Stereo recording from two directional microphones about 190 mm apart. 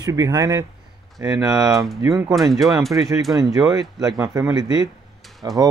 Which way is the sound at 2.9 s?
20° right (ahead or behind).